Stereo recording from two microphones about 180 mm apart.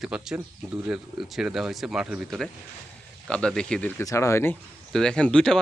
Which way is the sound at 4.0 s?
15° left (ahead or behind).